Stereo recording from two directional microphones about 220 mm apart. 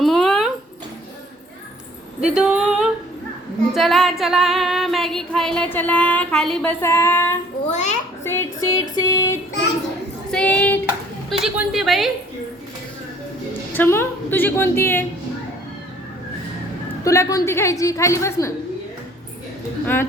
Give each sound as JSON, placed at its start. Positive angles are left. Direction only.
{"t": 0.0, "sound": "a sound", "side_deg": 0}
{"t": 2.2, "sound": "female singing", "side_deg": -5}
{"t": 7.7, "sound": "a child's voice", "side_deg": 30}
{"t": 8.2, "sound": "a sound", "side_deg": 10}
{"t": 10.3, "sound": "speech", "side_deg": 5}
{"t": 11.3, "sound": "female singing", "side_deg": 0}
{"t": 13.7, "sound": "a woman's voice", "side_deg": 10}
{"t": 17.0, "sound": "a woman's voice", "side_deg": 15}
{"t": 19.8, "sound": "a woman's voice", "side_deg": 10}